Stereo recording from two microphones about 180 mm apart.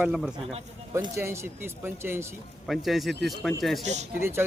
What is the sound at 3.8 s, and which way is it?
Speech, 40° right (ahead or behind).